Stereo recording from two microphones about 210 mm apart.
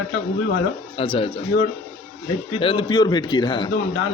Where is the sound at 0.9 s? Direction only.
25° left (ahead or behind).